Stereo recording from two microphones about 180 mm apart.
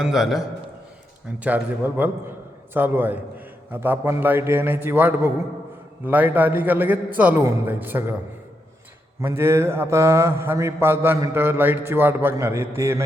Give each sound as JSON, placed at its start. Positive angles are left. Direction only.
{"t": 0.0, "sound": "a man's voice", "side_deg": 0}
{"t": 1.5, "sound": "a man's voice", "side_deg": -10}
{"t": 9.2, "sound": "a man's voice", "side_deg": -15}